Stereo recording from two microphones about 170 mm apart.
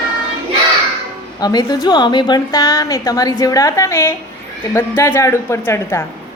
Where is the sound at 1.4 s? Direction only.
25° left (ahead or behind).